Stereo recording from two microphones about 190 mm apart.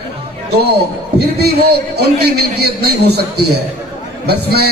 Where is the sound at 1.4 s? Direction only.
60° right (ahead or behind).